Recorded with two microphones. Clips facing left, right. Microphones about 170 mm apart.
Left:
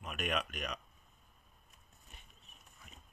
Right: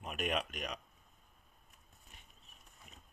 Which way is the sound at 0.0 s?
30° right (ahead or behind).